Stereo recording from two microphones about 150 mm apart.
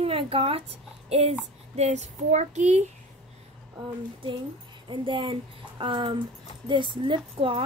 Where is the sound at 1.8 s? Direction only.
50° right (ahead or behind).